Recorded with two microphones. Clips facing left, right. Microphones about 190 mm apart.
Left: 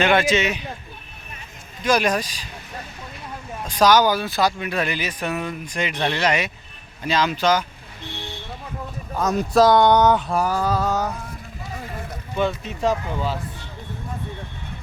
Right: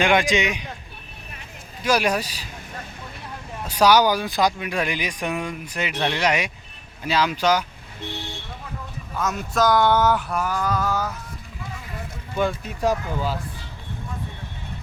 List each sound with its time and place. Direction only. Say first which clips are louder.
0.0 s speech: left 1 dB; 15° right (ahead or behind)
1.8 s speech: left 1 dB; 10° right (ahead or behind)
3.7 s speech: left 1 dB; 10° right (ahead or behind)
9.1 s a sound: left 6 dB; 40° left (ahead or behind)
9.6 s speech: left 1 dB; 20° left (ahead or behind)
10.3 s a sound: left 3 dB; 35° left (ahead or behind)
12.4 s speech: left 1 dB; 5° right (ahead or behind)